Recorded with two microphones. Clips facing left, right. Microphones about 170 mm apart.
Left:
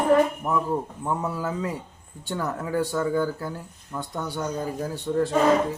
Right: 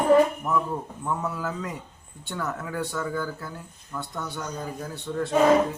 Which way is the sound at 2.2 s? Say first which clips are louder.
Left 3 dB; 30° left (ahead or behind).